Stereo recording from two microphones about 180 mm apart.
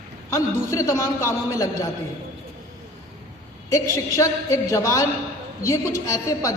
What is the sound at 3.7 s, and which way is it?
A man's voice, 15° left (ahead or behind).